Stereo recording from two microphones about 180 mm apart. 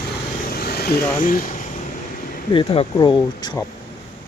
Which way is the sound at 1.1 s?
50° left (ahead or behind).